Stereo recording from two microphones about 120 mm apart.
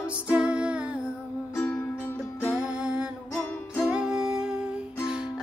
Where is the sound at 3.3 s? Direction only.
20° left (ahead or behind).